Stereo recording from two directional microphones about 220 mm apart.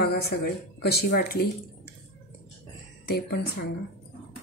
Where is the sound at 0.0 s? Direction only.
45° left (ahead or behind).